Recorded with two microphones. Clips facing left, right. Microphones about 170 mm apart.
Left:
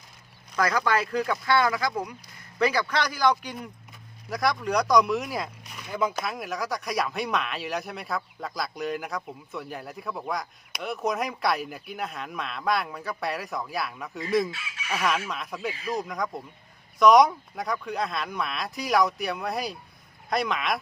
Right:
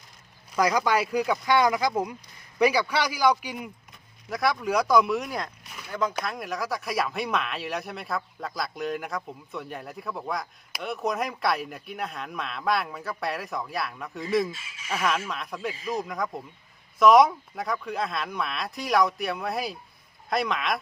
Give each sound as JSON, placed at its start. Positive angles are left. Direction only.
{"t": 0.5, "sound": "speech", "side_deg": -15}
{"t": 14.5, "sound": "fowl", "side_deg": 70}
{"t": 14.8, "sound": "speech", "side_deg": 0}